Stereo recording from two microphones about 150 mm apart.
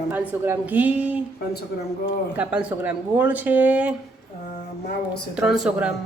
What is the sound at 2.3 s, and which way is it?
Speech, 10° right (ahead or behind).